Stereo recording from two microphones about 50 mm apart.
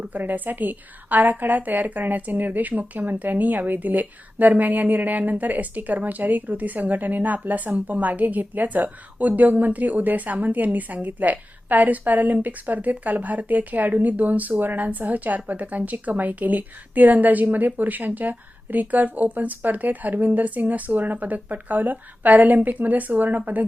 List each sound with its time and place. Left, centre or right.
0.1 s a woman's voice: right